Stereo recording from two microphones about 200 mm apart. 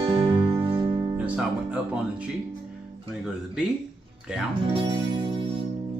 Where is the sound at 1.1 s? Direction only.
5° right (ahead or behind).